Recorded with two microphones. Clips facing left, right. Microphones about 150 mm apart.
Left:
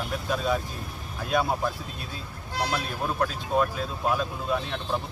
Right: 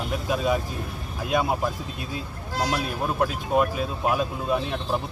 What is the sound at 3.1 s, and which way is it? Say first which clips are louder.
Speech: right 3 dB; 10° right (ahead or behind).